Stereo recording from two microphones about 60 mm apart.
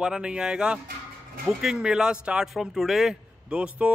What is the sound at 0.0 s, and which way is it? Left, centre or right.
Speech, centre.